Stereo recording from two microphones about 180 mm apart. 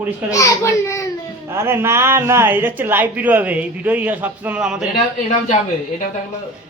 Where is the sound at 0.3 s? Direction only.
15° left (ahead or behind).